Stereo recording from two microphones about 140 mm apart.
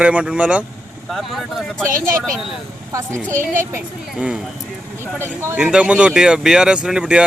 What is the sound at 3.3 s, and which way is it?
Speech, 70° right (ahead or behind).